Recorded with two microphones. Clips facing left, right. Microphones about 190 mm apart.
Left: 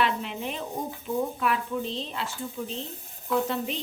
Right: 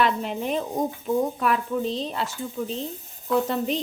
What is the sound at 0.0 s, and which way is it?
Speech, 40° right (ahead or behind).